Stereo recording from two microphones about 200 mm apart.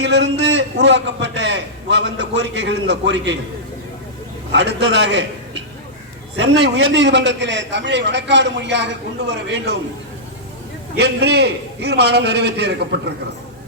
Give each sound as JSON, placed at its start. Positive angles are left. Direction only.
{"t": 0.0, "sound": "a man's voice", "side_deg": -60}
{"t": 4.5, "sound": "a man's voice", "side_deg": -60}
{"t": 10.9, "sound": "a man's voice", "side_deg": -55}